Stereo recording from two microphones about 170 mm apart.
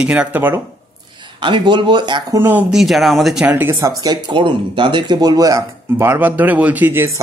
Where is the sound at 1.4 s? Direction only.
30° right (ahead or behind).